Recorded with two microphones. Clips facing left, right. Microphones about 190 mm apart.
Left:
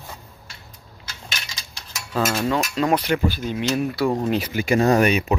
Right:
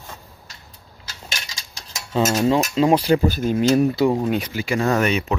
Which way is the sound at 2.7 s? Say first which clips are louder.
Right 4 dB; 25° right (ahead or behind).